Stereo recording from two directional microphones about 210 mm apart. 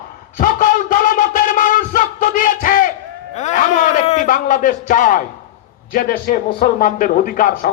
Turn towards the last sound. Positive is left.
turn(degrees=40)  # may be behind; listen again after turning